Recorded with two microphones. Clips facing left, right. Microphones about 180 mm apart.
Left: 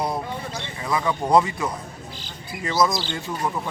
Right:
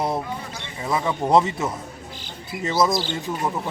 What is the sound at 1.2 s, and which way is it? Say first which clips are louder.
Speech: even; centre (ahead or behind).